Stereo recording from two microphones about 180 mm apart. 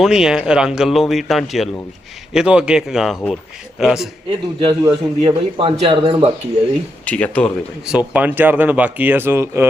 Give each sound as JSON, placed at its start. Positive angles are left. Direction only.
{"t": 0.0, "sound": "speech", "side_deg": -5}
{"t": 4.6, "sound": "a man's voice", "side_deg": -30}
{"t": 7.0, "sound": "speech", "side_deg": 5}
{"t": 7.9, "sound": "speech", "side_deg": -10}